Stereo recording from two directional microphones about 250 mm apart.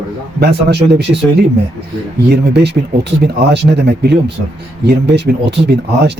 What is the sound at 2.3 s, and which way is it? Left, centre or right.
Speech, right.